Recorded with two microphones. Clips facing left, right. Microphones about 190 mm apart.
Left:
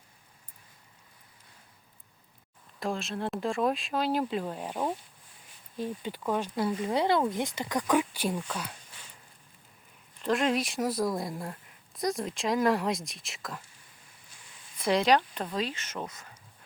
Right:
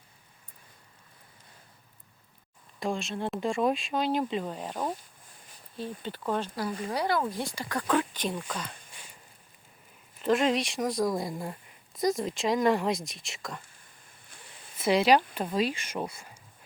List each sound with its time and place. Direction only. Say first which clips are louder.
2.8 s speech: right 1 dB; centre (ahead or behind)
6.6 s speech: left 3 dB; 20° left (ahead or behind)
8.9 s a sound: right 1 dB; 10° right (ahead or behind)
10.2 s speech: right 2 dB; centre (ahead or behind)
14.8 s speech: right 2 dB; 5° right (ahead or behind)